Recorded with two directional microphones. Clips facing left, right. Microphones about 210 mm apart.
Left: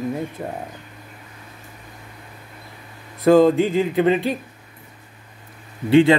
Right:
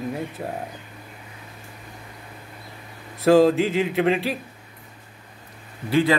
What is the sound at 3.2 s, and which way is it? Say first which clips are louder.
Speech: left 2 dB; 5° right (ahead or behind).